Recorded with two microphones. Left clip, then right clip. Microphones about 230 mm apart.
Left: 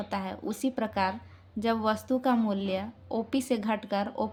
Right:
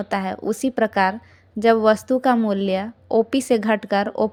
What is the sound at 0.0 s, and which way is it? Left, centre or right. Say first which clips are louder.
A woman's voice: right 10 dB; right.